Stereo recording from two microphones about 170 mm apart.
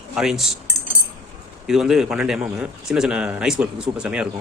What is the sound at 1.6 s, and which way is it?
Speech, centre (ahead or behind).